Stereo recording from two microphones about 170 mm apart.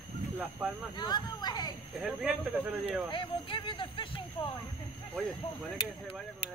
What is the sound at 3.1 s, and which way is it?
Speech, 30° left (ahead or behind).